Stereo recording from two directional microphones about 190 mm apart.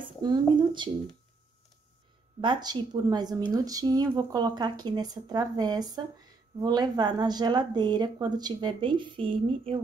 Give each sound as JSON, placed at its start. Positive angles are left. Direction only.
{"t": 0.0, "sound": "speech", "side_deg": -25}
{"t": 2.4, "sound": "speech", "side_deg": -20}